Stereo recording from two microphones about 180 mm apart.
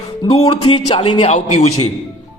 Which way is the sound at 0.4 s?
30° left (ahead or behind).